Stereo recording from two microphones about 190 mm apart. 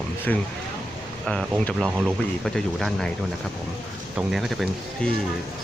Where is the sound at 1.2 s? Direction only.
5° left (ahead or behind).